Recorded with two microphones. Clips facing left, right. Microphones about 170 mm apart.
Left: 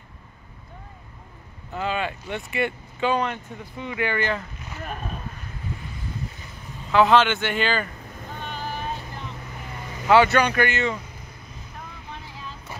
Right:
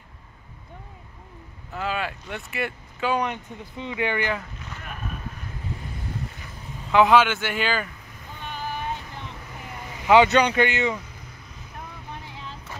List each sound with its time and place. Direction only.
1.7 s speech: centre (ahead or behind)
3.2 s speech: 20° right (ahead or behind)
6.9 s speech: 15° right (ahead or behind)
10.0 s speech: 20° right (ahead or behind)